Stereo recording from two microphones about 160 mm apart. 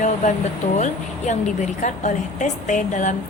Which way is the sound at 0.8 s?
50° left (ahead or behind).